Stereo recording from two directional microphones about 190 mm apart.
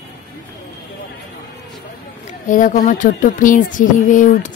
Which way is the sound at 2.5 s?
45° left (ahead or behind).